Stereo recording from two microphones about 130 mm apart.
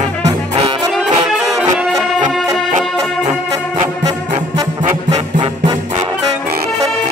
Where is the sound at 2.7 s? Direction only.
70° right (ahead or behind).